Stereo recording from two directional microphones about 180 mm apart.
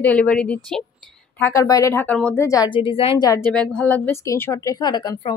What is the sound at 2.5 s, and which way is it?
Speech, 25° left (ahead or behind).